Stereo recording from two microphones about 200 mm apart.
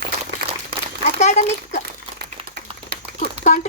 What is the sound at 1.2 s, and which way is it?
Speech, 35° left (ahead or behind).